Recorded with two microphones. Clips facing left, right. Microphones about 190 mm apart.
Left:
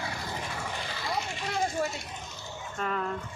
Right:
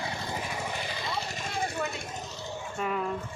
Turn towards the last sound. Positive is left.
turn(degrees=-10)  # may be behind; listen again after turning